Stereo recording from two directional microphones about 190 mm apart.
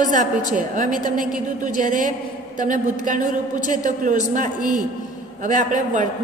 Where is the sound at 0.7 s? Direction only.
45° right (ahead or behind).